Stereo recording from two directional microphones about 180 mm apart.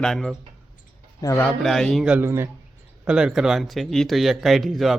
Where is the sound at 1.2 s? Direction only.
15° left (ahead or behind).